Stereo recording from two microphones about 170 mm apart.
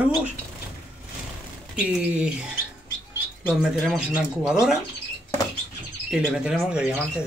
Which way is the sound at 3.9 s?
5° right (ahead or behind).